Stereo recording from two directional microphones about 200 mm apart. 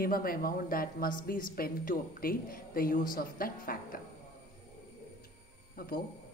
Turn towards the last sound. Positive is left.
turn(degrees=50)  # may be behind; listen again after turning